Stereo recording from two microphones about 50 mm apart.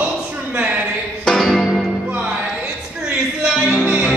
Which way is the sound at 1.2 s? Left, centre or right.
Centre.